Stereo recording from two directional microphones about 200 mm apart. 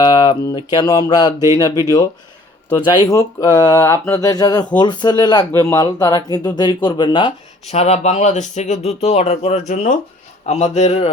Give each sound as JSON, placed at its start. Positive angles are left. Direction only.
{"t": 0.0, "sound": "speech", "side_deg": 20}
{"t": 2.6, "sound": "speech", "side_deg": 20}